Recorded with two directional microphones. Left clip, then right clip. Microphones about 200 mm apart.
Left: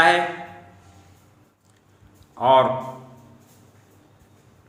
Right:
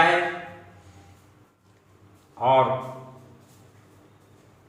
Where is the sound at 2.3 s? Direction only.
60° left (ahead or behind).